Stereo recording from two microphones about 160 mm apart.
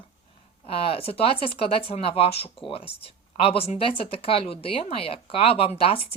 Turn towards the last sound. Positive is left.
turn(degrees=35)  # may be behind; listen again after turning